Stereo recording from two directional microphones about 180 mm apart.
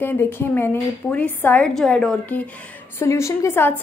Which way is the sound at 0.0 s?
10° left (ahead or behind).